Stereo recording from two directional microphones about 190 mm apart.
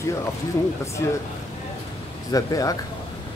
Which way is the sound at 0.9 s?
15° left (ahead or behind).